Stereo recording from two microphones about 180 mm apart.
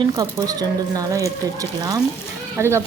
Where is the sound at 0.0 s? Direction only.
20° right (ahead or behind).